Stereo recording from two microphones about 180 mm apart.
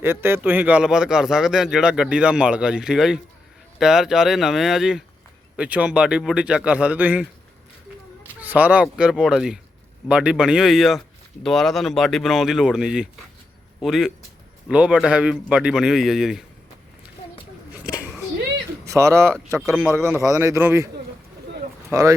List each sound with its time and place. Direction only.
0.0 s a man's voice: 15° right (ahead or behind)
8.4 s speech: 10° right (ahead or behind)
17.8 s a sound: 5° right (ahead or behind)
18.9 s a man's voice: 15° right (ahead or behind)
21.9 s a man's voice: 15° right (ahead or behind)